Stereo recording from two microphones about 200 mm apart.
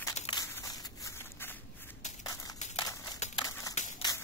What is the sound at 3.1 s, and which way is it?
Crumpling, 35° left (ahead or behind).